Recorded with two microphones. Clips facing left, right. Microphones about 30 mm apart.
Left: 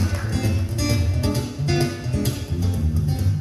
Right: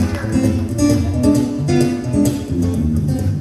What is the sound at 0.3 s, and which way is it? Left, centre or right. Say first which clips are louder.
Music: right 9 dB; centre.